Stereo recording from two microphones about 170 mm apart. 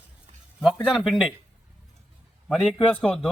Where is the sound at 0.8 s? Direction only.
5° left (ahead or behind).